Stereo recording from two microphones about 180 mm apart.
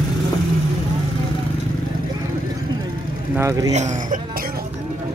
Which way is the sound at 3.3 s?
15° right (ahead or behind).